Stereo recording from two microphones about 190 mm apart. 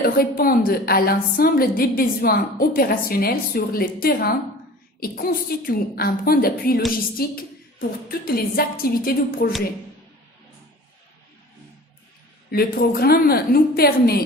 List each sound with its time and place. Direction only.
0.0 s a woman's voice: 50° left (ahead or behind)
12.5 s a woman's voice: 55° left (ahead or behind)